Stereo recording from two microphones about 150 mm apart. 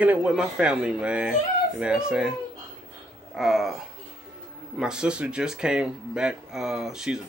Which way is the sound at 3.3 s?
Centre (ahead or behind).